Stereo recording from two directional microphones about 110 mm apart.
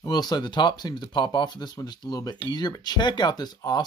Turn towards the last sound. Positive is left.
turn(degrees=40)  # may be behind; listen again after turning